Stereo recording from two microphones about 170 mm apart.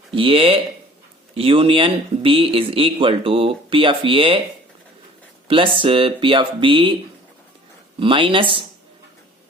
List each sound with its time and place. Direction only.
0.1 s speech: 30° right (ahead or behind)
5.5 s speech: 30° right (ahead or behind)
7.9 s speech: 30° right (ahead or behind)